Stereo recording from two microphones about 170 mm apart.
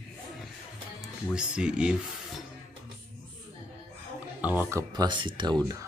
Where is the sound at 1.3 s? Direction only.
5° right (ahead or behind).